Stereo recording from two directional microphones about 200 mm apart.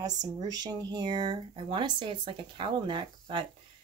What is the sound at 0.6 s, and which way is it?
A woman's voice, 20° right (ahead or behind).